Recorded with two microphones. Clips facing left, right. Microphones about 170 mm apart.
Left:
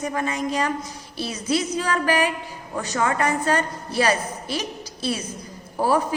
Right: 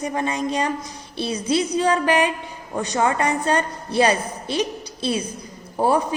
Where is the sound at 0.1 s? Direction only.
25° right (ahead or behind).